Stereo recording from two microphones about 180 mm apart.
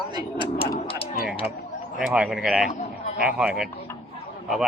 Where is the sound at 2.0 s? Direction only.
Centre (ahead or behind).